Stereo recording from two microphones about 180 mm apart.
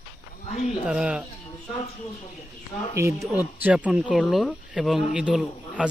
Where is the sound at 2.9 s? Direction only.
15° right (ahead or behind).